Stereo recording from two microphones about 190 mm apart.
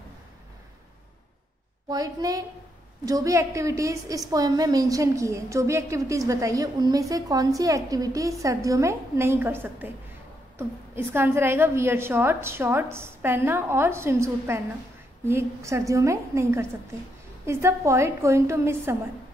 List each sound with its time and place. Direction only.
1.9 s a woman's voice: 20° right (ahead or behind)
11.0 s a woman's voice: 10° right (ahead or behind)